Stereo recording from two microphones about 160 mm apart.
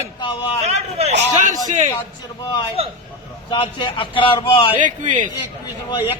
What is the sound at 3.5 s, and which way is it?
A man's voice, 30° left (ahead or behind).